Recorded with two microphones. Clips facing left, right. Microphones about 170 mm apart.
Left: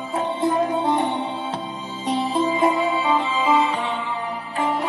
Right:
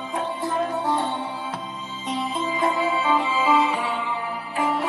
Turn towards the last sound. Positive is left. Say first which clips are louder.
# left 1 dB
turn(degrees=-5)  # may be behind; listen again after turning